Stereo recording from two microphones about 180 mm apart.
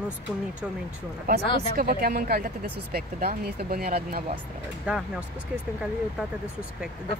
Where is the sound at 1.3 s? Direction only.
60° right (ahead or behind).